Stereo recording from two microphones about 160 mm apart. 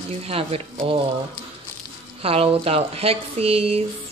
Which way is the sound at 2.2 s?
35° right (ahead or behind).